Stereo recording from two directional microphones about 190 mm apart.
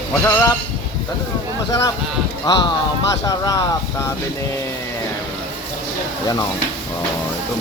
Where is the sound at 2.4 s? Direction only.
25° left (ahead or behind).